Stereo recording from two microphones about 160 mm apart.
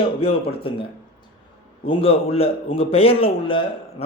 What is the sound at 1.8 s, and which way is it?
Speech, 35° left (ahead or behind).